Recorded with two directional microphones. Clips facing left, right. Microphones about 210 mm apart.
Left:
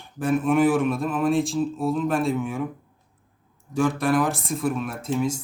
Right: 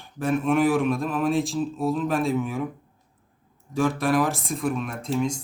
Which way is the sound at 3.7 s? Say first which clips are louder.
Left 1 dB; centre (ahead or behind).